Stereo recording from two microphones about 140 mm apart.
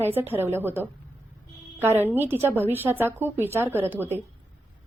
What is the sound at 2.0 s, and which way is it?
A woman's voice, 15° right (ahead or behind).